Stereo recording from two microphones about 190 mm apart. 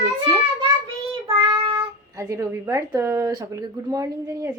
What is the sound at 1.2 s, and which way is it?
Child singing, 25° right (ahead or behind).